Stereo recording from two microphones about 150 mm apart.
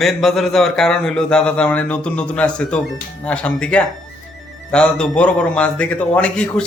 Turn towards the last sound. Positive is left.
turn(degrees=5)  # may be behind; listen again after turning